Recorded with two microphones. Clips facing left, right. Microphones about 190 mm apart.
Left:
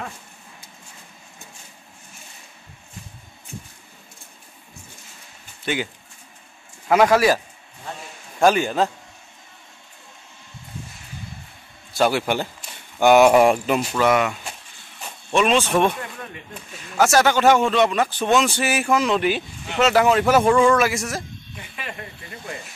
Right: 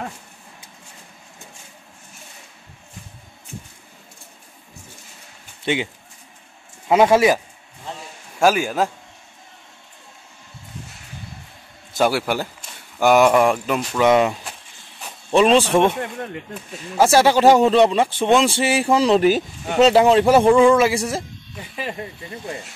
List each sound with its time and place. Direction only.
5.6 s speech: 25° right (ahead or behind)
6.9 s speech: 25° right (ahead or behind)
8.4 s a man's voice: 5° right (ahead or behind)
12.0 s a man's voice: 5° right (ahead or behind)
13.3 s speech: 10° left (ahead or behind)
14.1 s a man's voice: 30° right (ahead or behind)
19.8 s speech: 30° right (ahead or behind)
20.4 s a man's voice: 15° right (ahead or behind)
20.7 s speech: 30° right (ahead or behind)